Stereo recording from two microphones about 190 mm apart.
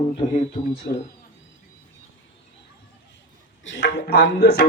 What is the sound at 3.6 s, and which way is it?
A man's voice, 75° left (ahead or behind).